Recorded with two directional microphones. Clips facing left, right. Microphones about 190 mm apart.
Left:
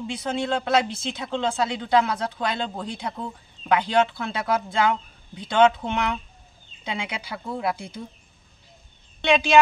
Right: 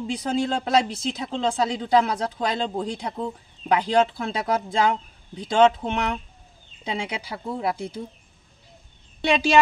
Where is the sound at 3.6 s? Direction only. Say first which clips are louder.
Right 1 dB; 35° right (ahead or behind).